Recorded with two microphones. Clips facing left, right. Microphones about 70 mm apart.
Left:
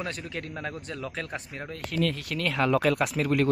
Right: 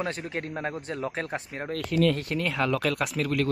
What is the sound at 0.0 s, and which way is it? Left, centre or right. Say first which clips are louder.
Speech: right 3 dB; right.